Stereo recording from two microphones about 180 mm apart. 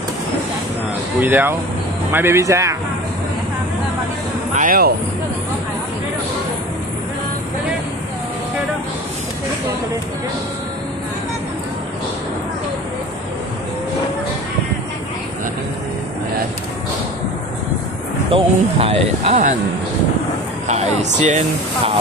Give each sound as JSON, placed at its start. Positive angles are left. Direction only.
{"t": 1.2, "sound": "speech", "side_deg": -10}
{"t": 4.6, "sound": "speech", "side_deg": -55}
{"t": 18.3, "sound": "speech", "side_deg": -35}
{"t": 20.6, "sound": "speech", "side_deg": -40}